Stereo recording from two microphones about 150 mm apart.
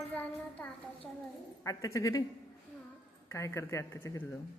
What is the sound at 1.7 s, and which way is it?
Speech, 20° left (ahead or behind).